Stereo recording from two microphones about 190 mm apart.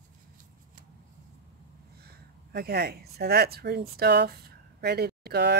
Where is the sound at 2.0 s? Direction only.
55° right (ahead or behind).